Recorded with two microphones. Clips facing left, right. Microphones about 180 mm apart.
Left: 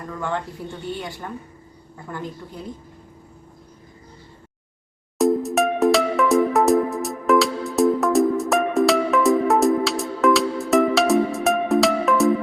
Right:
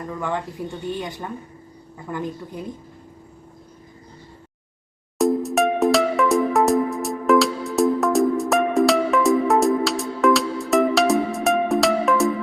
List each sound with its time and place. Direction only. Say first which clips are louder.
0.6 s a woman's voice: right 3 dB; 15° right (ahead or behind)
5.1 s music: left 1 dB; centre (ahead or behind)